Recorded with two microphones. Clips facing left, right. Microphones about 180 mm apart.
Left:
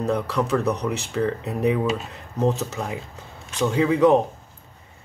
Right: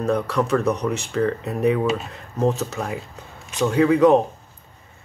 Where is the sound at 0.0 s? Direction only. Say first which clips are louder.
Right 2 dB; 15° left (ahead or behind).